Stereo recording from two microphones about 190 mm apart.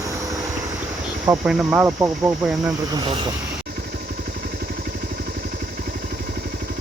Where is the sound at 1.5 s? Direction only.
Centre (ahead or behind).